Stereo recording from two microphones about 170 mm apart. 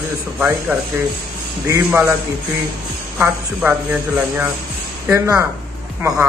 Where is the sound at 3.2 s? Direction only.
10° right (ahead or behind).